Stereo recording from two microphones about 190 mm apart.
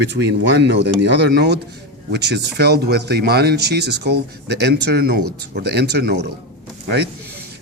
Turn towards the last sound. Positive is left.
turn(degrees=-60)  # may be behind; listen again after turning